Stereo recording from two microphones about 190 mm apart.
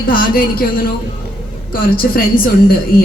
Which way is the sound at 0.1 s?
50° left (ahead or behind).